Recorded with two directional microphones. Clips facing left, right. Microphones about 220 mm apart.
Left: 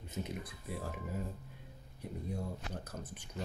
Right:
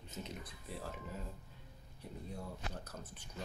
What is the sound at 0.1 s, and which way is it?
Speech, 10° left (ahead or behind).